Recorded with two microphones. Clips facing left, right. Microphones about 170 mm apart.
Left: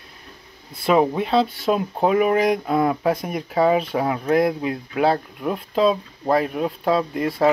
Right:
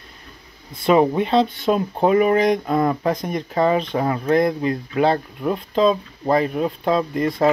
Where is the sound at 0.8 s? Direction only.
Centre (ahead or behind).